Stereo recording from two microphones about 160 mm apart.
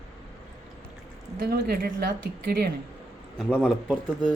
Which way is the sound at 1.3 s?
70° right (ahead or behind).